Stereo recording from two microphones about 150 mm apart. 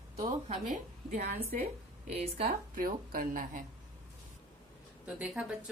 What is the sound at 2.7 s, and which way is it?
Speech, 70° right (ahead or behind).